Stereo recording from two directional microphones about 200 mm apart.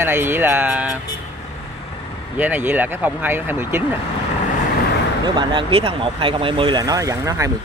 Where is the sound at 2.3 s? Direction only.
10° right (ahead or behind).